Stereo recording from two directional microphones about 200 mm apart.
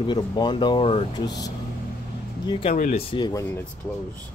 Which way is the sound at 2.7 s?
40° left (ahead or behind).